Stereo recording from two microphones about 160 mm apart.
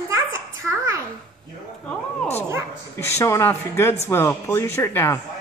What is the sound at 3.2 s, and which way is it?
Speech, 15° left (ahead or behind).